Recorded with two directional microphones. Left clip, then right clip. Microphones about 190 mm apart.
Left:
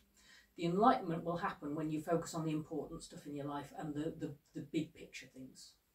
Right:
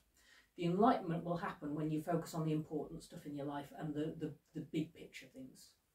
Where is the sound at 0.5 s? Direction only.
15° right (ahead or behind).